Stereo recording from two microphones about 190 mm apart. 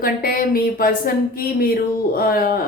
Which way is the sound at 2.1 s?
50° left (ahead or behind).